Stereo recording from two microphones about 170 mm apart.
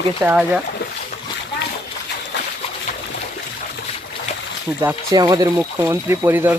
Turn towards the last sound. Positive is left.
turn(degrees=-10)  # may be behind; listen again after turning